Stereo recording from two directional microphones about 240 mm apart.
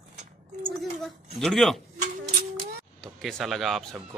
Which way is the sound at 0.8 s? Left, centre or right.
Centre.